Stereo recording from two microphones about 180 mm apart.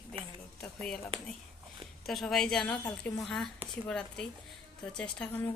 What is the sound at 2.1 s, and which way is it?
Speech, centre (ahead or behind).